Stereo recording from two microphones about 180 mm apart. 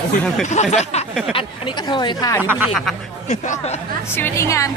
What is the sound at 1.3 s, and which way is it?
Speech, 25° left (ahead or behind).